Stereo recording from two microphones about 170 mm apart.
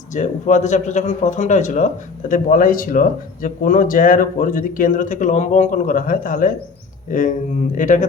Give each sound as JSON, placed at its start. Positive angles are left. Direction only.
{"t": 0.1, "sound": "speech", "side_deg": 45}